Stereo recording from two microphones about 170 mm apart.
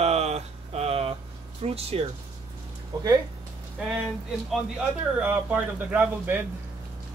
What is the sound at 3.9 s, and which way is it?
Speech, 5° right (ahead or behind).